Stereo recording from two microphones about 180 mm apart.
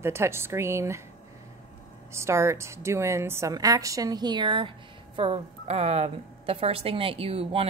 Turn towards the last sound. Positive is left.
turn(degrees=-30)  # may be behind; listen again after turning